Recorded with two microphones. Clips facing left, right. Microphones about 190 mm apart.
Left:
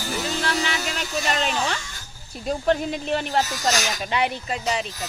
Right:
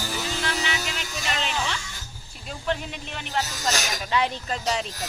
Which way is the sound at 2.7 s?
40° left (ahead or behind).